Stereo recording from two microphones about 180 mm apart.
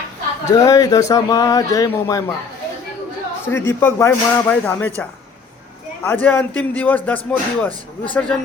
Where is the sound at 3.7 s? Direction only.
10° left (ahead or behind).